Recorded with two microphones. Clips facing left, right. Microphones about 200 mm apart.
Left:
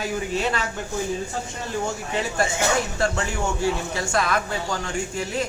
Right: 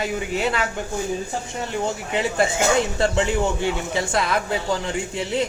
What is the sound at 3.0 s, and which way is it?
A man's voice, 20° right (ahead or behind).